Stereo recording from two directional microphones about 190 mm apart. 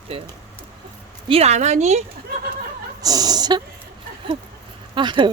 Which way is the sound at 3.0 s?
20° right (ahead or behind).